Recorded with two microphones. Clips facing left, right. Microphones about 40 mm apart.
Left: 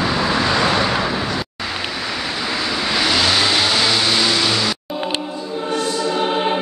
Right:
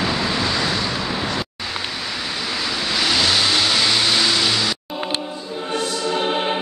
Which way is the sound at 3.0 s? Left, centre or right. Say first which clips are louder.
Left 1 dB; centre.